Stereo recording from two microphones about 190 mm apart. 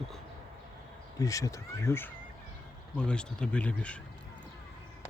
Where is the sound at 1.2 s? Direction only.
15° left (ahead or behind).